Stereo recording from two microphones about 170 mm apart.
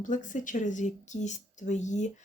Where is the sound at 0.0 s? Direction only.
50° left (ahead or behind).